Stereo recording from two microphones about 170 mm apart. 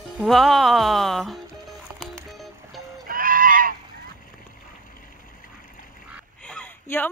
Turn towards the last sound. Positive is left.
turn(degrees=10)  # may be behind; listen again after turning